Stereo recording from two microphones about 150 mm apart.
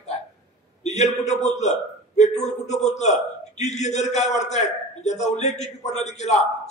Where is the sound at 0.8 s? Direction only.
50° left (ahead or behind).